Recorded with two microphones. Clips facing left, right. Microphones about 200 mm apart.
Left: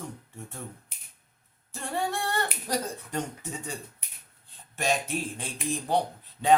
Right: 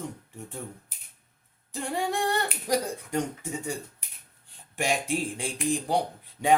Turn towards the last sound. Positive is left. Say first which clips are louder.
# left 1 dB
turn(degrees=-15)  # may be behind; listen again after turning